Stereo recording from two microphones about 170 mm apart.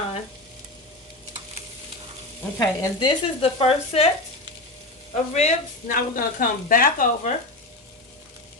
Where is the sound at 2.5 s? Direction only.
25° left (ahead or behind).